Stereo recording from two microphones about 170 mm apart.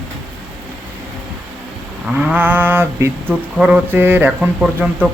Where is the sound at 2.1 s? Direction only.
10° right (ahead or behind).